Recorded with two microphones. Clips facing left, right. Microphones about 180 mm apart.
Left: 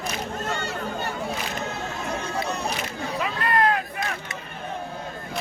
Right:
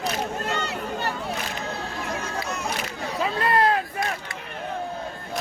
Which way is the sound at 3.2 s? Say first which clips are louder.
Right 2 dB; 30° right (ahead or behind).